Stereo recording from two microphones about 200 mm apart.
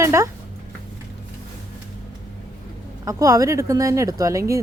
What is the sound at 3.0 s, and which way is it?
Speech, 15° right (ahead or behind).